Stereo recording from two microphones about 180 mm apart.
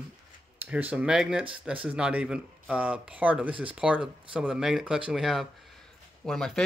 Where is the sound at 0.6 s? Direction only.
10° right (ahead or behind).